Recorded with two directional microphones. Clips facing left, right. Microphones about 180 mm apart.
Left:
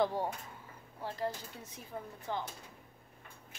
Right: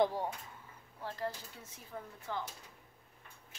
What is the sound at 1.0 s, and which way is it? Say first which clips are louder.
Speech: left 2 dB; 15° left (ahead or behind).